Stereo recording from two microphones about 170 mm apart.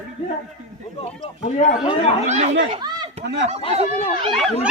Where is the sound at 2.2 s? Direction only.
40° right (ahead or behind).